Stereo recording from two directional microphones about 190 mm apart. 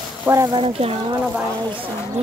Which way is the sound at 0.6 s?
30° right (ahead or behind).